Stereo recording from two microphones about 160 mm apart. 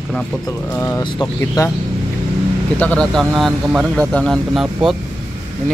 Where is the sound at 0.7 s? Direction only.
10° left (ahead or behind).